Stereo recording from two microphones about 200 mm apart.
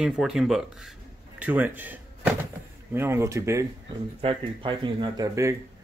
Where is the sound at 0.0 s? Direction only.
Centre (ahead or behind).